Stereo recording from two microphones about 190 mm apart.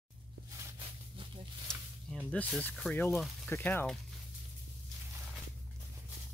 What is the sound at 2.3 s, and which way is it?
Speech, 5° left (ahead or behind).